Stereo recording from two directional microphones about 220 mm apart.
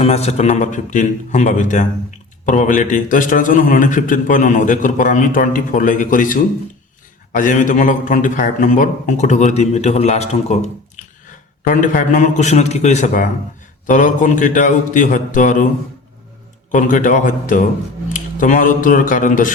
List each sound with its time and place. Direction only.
0.0 s a man's voice: 30° left (ahead or behind)
16.7 s a man's voice: 35° left (ahead or behind)